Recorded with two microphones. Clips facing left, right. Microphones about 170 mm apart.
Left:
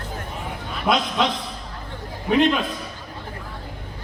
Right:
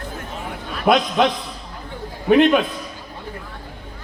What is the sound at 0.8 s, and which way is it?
Speech, 55° right (ahead or behind).